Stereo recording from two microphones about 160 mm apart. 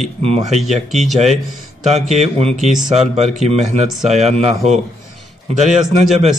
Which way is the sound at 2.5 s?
Centre (ahead or behind).